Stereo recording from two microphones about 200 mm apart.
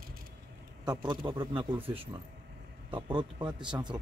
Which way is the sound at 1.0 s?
25° right (ahead or behind).